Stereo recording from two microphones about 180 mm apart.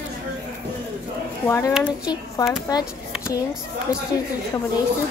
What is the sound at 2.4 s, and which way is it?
Speech, 20° left (ahead or behind).